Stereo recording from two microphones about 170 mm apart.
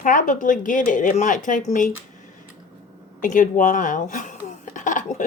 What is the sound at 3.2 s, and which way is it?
Speech, 50° left (ahead or behind).